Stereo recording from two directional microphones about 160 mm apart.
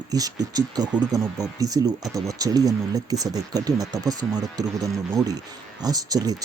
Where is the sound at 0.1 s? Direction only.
25° right (ahead or behind).